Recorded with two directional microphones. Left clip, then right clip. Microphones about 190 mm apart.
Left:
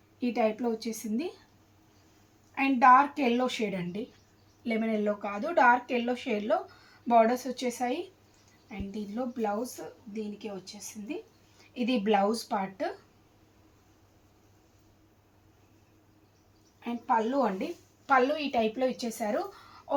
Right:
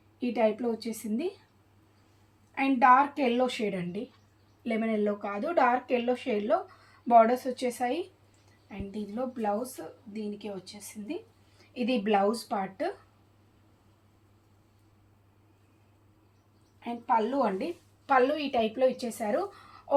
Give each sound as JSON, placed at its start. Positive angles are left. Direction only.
{"t": 0.2, "sound": "a woman's voice", "side_deg": -15}
{"t": 2.6, "sound": "a woman's voice", "side_deg": -15}
{"t": 11.7, "sound": "a woman's voice", "side_deg": -15}
{"t": 16.8, "sound": "a woman's voice", "side_deg": -20}